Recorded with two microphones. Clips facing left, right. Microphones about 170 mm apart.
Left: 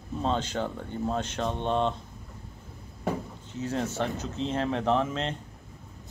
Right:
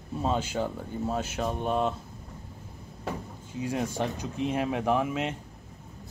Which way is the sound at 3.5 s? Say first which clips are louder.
Even; 10° right (ahead or behind).